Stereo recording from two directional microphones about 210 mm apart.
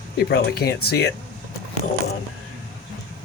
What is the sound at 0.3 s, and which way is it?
Speech, 50° left (ahead or behind).